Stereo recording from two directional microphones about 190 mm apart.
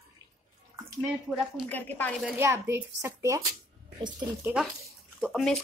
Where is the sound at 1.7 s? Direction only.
10° left (ahead or behind).